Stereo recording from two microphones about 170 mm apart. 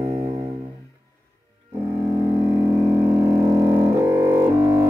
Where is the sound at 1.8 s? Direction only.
15° right (ahead or behind).